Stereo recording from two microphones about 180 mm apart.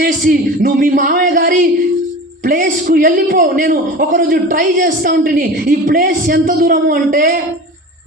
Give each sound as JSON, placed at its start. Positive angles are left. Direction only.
{"t": 0.0, "sound": "a man's voice", "side_deg": -55}